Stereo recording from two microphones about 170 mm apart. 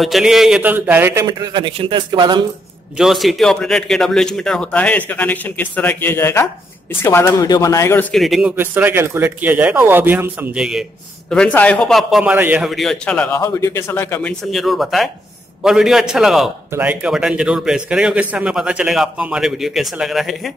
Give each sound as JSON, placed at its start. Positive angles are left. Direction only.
{"t": 0.0, "sound": "a man's voice", "side_deg": 0}
{"t": 1.2, "sound": "a man's voice", "side_deg": -25}
{"t": 3.0, "sound": "speech", "side_deg": 0}
{"t": 8.1, "sound": "speech", "side_deg": 0}
{"t": 14.5, "sound": "speech", "side_deg": 0}